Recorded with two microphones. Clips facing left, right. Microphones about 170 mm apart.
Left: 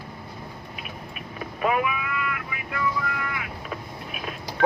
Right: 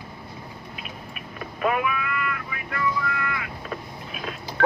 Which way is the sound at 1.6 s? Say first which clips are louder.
Even; 15° left (ahead or behind).